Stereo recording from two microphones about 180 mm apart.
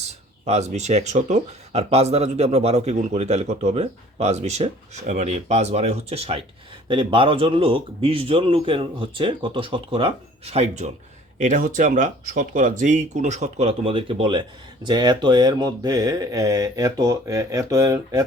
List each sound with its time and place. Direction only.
0.0 s speech: 35° right (ahead or behind); by 18.2 s 20° right (ahead or behind)